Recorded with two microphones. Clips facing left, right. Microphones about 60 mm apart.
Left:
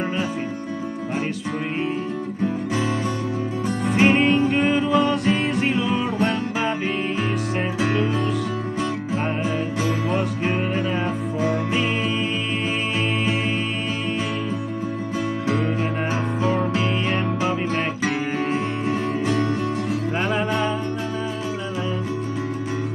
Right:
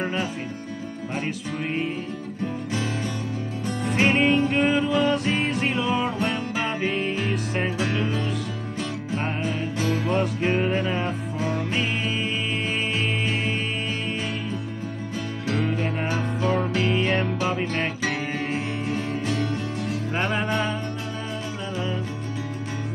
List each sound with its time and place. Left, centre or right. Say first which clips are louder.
3.8 s music: left 3 dB; centre
9.8 s music: right 2 dB; centre
15.5 s music: even; centre
16.4 s music: left 1 dB; left
18.9 s music: left 5 dB; left
20.2 s music: left 1 dB; centre